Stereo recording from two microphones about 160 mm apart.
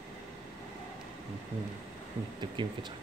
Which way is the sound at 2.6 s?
30° right (ahead or behind).